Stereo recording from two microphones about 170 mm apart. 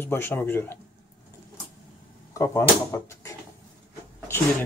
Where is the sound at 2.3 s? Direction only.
15° left (ahead or behind).